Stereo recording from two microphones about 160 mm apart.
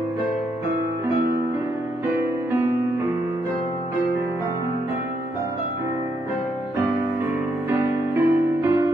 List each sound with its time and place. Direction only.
7.7 s music: 15° right (ahead or behind)